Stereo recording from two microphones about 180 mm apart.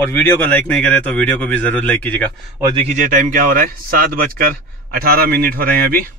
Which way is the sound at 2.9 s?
45° right (ahead or behind).